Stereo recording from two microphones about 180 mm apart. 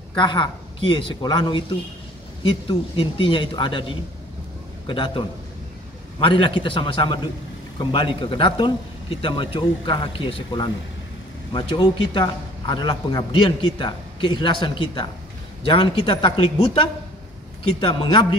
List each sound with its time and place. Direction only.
0.1 s a man's voice: 25° left (ahead or behind)